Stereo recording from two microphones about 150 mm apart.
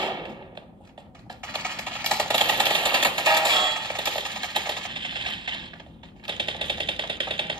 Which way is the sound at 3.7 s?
5° left (ahead or behind).